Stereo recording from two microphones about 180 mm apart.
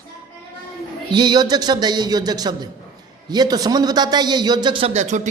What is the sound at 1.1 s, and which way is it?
A man's voice, 25° right (ahead or behind).